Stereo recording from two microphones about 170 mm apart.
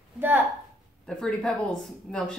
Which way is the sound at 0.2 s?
15° right (ahead or behind).